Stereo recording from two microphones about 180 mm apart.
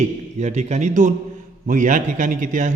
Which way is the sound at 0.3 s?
40° right (ahead or behind).